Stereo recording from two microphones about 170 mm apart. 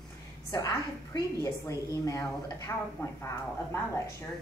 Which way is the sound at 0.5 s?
20° left (ahead or behind).